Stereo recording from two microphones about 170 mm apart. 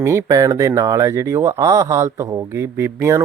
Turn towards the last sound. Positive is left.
turn(degrees=-15)  # may be behind; listen again after turning